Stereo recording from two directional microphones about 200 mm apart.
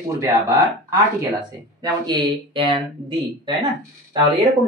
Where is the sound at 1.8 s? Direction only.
20° right (ahead or behind).